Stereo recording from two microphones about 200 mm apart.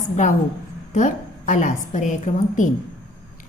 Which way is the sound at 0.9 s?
40° left (ahead or behind).